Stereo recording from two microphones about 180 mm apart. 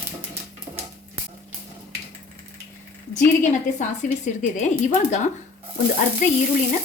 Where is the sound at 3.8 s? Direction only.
40° left (ahead or behind).